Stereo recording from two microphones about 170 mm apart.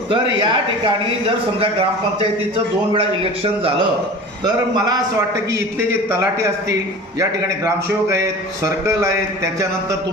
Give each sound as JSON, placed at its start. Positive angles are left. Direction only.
{"t": 0.1, "sound": "speech", "side_deg": -30}
{"t": 2.9, "sound": "speech", "side_deg": -35}
{"t": 4.7, "sound": "speech", "side_deg": -20}
{"t": 8.0, "sound": "speech", "side_deg": -15}